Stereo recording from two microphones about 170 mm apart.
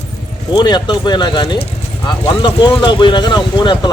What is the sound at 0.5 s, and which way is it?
Speech, 25° left (ahead or behind).